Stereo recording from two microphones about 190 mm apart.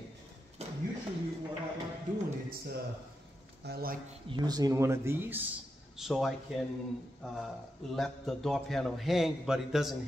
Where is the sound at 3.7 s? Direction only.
50° right (ahead or behind).